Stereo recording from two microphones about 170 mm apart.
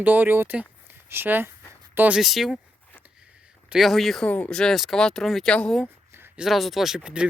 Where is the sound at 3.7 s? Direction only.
Centre (ahead or behind).